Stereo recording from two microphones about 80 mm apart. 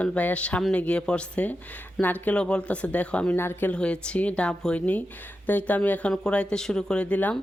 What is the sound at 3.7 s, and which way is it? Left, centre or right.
Speech, centre.